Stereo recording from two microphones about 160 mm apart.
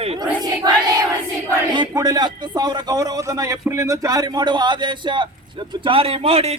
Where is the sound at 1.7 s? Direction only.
25° right (ahead or behind).